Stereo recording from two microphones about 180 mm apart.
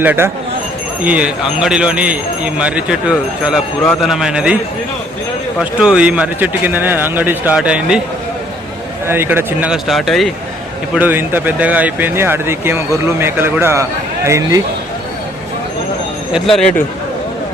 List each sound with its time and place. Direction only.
0.0 s speech: 10° right (ahead or behind)
5.5 s speech: 5° right (ahead or behind)
9.0 s speech: 10° right (ahead or behind)
10.9 s speech: 10° right (ahead or behind)
16.3 s speech: centre (ahead or behind)